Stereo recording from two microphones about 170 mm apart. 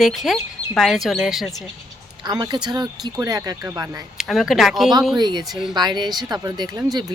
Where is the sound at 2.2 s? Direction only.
25° right (ahead or behind).